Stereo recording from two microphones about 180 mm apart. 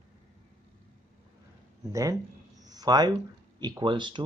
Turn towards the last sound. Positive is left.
turn(degrees=-25)  # may be behind; listen again after turning